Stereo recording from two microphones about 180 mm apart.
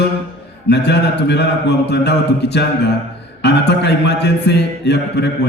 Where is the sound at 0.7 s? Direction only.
70° left (ahead or behind).